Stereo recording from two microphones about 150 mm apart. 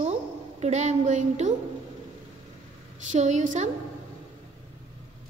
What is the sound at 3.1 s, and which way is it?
Speech, 55° right (ahead or behind).